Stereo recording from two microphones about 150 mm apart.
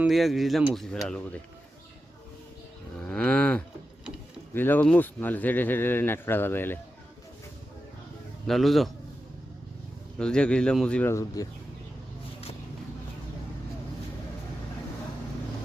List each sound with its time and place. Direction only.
0.0 s speech: centre (ahead or behind)
3.0 s cattle: 10° left (ahead or behind)
4.5 s speech: 15° left (ahead or behind)
8.4 s speech: centre (ahead or behind)
10.2 s speech: 5° left (ahead or behind)
11.1 s speech: 20° left (ahead or behind)